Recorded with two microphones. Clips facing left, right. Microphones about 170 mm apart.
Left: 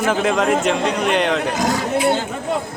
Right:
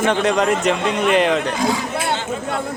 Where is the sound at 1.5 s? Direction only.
45° left (ahead or behind).